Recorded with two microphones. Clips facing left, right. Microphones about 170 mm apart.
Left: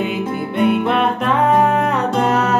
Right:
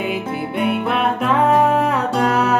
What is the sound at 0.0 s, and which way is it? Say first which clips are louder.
Music: left 2 dB; 10° right (ahead or behind).